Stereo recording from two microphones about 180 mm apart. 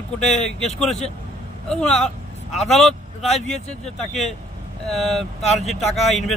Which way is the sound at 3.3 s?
35° left (ahead or behind).